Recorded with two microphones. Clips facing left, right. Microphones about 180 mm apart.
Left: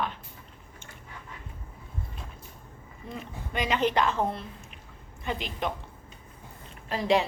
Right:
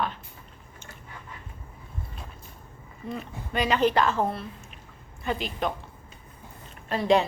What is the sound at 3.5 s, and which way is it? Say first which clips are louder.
A woman's voice: right 3 dB; 15° left (ahead or behind).